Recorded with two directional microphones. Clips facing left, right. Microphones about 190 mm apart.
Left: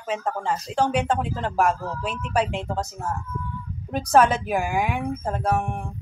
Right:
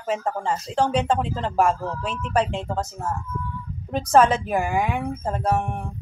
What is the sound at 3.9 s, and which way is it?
Speech, 5° left (ahead or behind).